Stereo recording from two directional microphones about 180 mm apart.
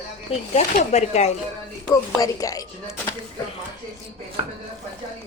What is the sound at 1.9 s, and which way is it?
Speech, 20° left (ahead or behind).